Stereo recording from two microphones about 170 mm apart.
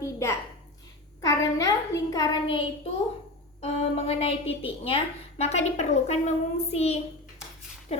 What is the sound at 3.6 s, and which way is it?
A woman's voice, 35° left (ahead or behind).